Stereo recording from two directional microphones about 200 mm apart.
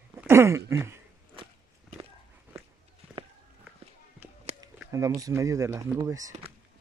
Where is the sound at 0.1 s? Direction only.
10° right (ahead or behind).